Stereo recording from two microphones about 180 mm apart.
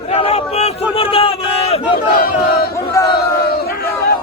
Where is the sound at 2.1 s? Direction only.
55° left (ahead or behind).